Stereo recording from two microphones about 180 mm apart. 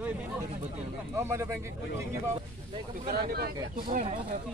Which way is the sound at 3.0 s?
55° right (ahead or behind).